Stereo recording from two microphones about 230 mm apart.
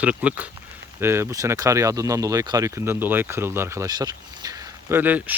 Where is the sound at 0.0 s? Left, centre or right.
Centre.